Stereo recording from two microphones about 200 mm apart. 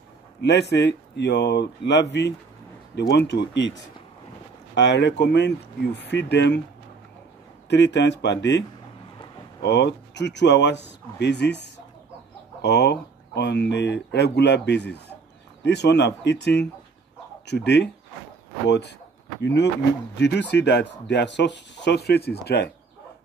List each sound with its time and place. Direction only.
0.4 s speech: 55° left (ahead or behind)
7.7 s speech: 60° left (ahead or behind)